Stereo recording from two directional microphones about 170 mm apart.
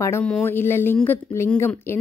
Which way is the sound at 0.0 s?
15° left (ahead or behind).